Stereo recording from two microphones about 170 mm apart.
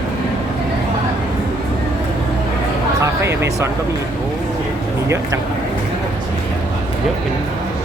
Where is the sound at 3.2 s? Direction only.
15° right (ahead or behind).